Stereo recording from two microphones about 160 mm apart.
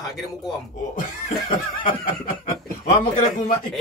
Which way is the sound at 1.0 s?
55° left (ahead or behind).